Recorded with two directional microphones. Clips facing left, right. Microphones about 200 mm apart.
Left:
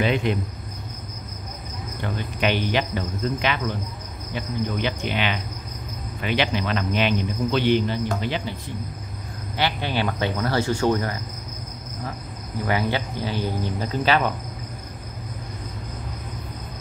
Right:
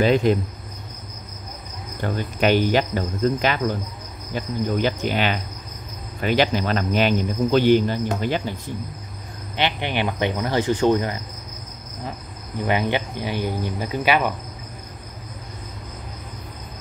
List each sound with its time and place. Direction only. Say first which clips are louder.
0.0 s cricket: right 5 dB; 40° right (ahead or behind)
2.0 s cricket: right 4 dB; 40° right (ahead or behind)
8.2 s speech: right 3 dB; 45° right (ahead or behind)
9.6 s speech: right 1 dB; 20° right (ahead or behind)
12.6 s speech: right 2 dB; 20° right (ahead or behind)